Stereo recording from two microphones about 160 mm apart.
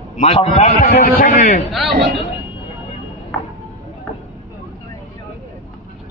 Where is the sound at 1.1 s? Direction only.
65° left (ahead or behind).